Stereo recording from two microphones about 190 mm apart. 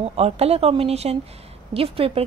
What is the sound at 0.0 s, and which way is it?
A woman's voice, 30° right (ahead or behind).